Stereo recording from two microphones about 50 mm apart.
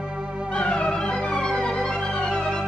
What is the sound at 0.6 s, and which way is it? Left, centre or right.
Music, centre.